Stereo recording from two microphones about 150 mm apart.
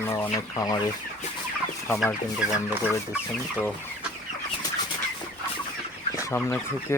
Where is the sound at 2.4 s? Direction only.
10° right (ahead or behind).